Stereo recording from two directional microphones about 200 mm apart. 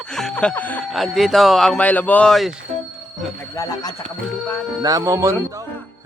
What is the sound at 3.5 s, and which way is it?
Speech, 15° left (ahead or behind).